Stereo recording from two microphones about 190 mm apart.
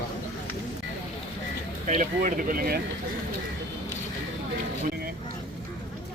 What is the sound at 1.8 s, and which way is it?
Speech, 40° right (ahead or behind).